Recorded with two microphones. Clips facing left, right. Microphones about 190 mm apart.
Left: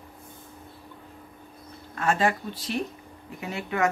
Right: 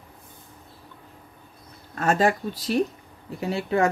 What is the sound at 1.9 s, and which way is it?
Speech, 40° right (ahead or behind).